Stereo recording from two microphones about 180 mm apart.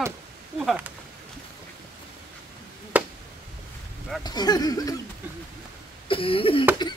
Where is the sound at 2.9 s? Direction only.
10° right (ahead or behind).